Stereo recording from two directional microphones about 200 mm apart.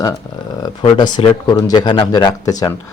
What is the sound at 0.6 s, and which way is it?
Speech, 20° left (ahead or behind).